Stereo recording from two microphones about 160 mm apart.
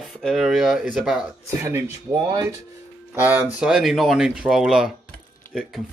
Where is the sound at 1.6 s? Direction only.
20° right (ahead or behind); by 5.8 s centre (ahead or behind).